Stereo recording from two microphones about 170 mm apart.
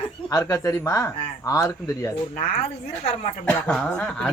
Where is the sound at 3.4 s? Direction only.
5° left (ahead or behind).